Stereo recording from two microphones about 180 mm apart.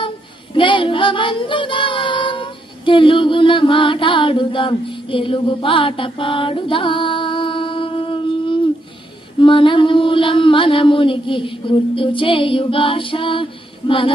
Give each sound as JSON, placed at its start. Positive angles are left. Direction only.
{"t": 0.6, "sound": "child singing", "side_deg": 30}
{"t": 9.4, "sound": "mantra", "side_deg": 30}